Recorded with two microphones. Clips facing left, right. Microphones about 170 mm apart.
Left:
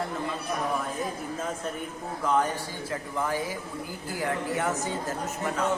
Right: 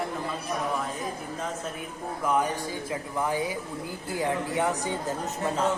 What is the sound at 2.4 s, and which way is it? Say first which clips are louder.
Speech: even; 15° right (ahead or behind).